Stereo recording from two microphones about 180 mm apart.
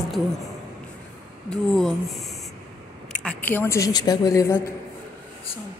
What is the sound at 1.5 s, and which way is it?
A woman's voice, centre (ahead or behind).